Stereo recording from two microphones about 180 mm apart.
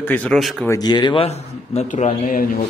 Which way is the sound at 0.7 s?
20° left (ahead or behind).